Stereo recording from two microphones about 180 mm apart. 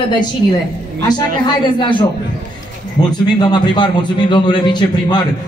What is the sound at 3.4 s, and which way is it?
A man's voice, 25° left (ahead or behind).